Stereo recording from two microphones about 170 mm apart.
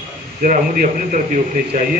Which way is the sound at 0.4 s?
50° right (ahead or behind).